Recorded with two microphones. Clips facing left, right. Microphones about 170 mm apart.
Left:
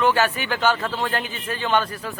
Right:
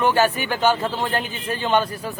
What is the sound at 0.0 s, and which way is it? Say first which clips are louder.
Speech: right 1 dB; 15° right (ahead or behind).